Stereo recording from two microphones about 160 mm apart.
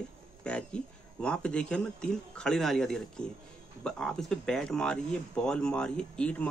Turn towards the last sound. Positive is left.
turn(degrees=10)  # may be behind; listen again after turning